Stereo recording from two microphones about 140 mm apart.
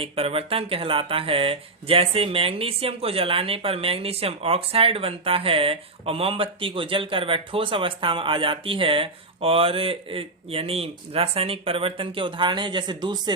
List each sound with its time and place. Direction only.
0.0 s speech: 45° right (ahead or behind)